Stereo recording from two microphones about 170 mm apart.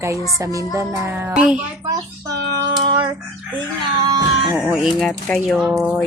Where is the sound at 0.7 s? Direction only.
15° right (ahead or behind).